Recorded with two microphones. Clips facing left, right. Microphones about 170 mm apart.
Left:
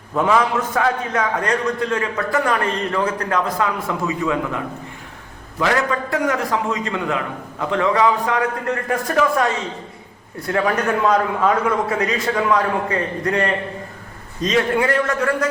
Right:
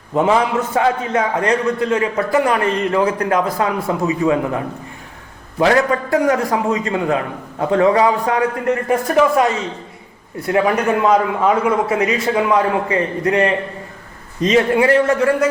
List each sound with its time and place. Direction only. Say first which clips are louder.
0.1 s a man's voice: right 2 dB; 25° right (ahead or behind)
3.6 s a man's voice: right 3 dB; 25° right (ahead or behind)
8.9 s a man's voice: right 4 dB; 20° right (ahead or behind)